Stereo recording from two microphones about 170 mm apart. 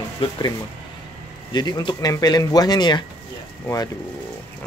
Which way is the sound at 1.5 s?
25° left (ahead or behind).